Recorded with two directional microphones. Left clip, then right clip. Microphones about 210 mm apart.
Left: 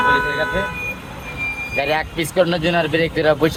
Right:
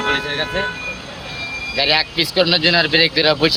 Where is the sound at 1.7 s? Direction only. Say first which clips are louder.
Right 5 dB; 5° left (ahead or behind).